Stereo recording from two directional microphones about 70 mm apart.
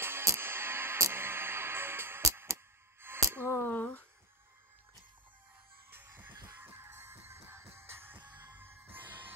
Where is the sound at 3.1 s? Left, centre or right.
Right.